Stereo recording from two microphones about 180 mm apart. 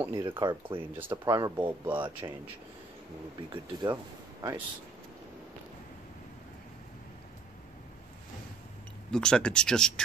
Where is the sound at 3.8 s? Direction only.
20° right (ahead or behind).